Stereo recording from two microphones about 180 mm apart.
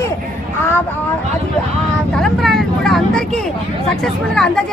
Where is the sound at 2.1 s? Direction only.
Centre (ahead or behind).